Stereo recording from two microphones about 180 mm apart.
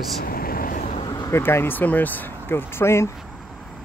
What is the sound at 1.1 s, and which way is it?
Speech, 20° left (ahead or behind).